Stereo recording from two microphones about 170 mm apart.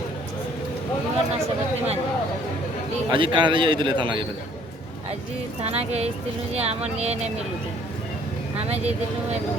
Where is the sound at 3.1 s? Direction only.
30° right (ahead or behind).